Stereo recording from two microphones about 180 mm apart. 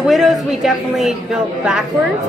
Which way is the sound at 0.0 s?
Centre (ahead or behind).